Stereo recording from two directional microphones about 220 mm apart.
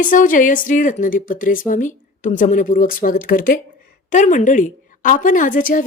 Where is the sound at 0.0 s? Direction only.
35° left (ahead or behind).